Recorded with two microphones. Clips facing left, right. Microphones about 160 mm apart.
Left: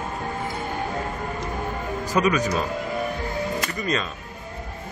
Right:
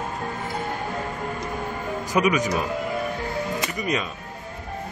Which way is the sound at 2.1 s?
15° right (ahead or behind).